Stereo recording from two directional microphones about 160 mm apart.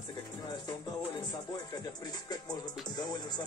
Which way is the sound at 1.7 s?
25° left (ahead or behind).